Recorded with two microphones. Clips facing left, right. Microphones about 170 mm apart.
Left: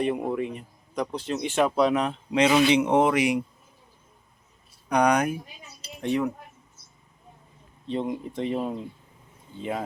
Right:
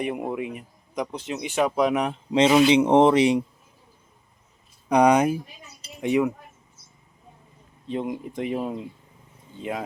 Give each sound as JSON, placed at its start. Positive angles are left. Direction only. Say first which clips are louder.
{"t": 0.0, "sound": "a man's voice", "louder": "left 2 dB", "side_deg": -15}
{"t": 2.5, "sound": "speech", "louder": "right 4 dB", "side_deg": -25}
{"t": 4.9, "sound": "speech", "louder": "right 4 dB", "side_deg": -25}
{"t": 6.0, "sound": "a man's voice", "louder": "right 4 dB", "side_deg": -10}
{"t": 7.9, "sound": "a man's voice", "louder": "even", "side_deg": -10}